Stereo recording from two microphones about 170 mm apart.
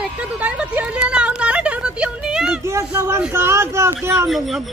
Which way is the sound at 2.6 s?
15° right (ahead or behind).